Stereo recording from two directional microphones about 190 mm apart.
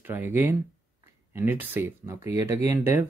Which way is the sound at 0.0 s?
10° right (ahead or behind).